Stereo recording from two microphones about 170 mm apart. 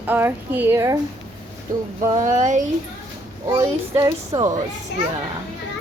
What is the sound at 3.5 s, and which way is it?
Speech, 20° right (ahead or behind).